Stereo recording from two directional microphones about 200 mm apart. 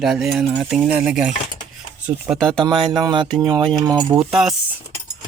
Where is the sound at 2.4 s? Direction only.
5° left (ahead or behind).